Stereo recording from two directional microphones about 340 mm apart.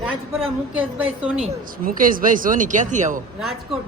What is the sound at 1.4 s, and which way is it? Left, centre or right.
Speech, right.